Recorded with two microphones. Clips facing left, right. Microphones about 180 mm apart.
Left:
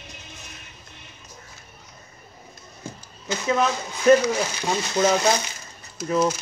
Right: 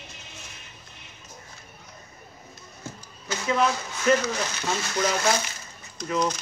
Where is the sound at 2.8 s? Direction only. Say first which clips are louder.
Left 2 dB; 20° left (ahead or behind).